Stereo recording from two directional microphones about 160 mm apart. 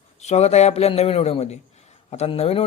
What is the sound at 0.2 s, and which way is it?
Speech, 45° left (ahead or behind).